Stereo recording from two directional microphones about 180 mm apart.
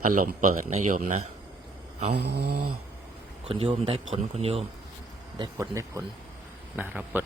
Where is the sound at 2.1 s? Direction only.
65° right (ahead or behind).